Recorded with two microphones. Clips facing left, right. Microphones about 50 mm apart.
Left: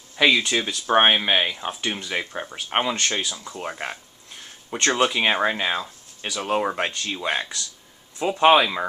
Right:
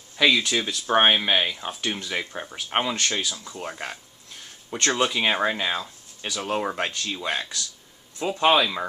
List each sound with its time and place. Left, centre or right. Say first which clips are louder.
0.1 s speech: left 2 dB; centre